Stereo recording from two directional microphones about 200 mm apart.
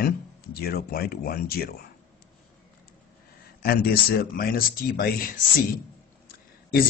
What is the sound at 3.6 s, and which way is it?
Speech, 50° left (ahead or behind).